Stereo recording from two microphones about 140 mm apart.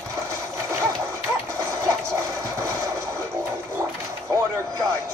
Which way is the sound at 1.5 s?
20° right (ahead or behind).